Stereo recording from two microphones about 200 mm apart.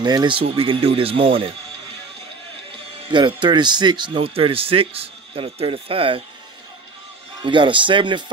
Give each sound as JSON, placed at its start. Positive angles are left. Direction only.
{"t": 0.0, "sound": "speech", "side_deg": -20}
{"t": 3.1, "sound": "speech", "side_deg": -25}
{"t": 7.4, "sound": "speech", "side_deg": -25}